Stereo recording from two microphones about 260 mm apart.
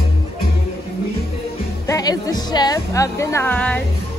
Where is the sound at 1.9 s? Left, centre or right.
Centre.